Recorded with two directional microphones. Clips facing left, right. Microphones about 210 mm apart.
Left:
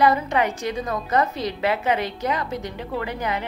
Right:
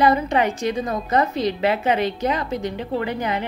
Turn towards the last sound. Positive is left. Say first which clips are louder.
# right 3 dB
turn(degrees=-25)  # may be behind; listen again after turning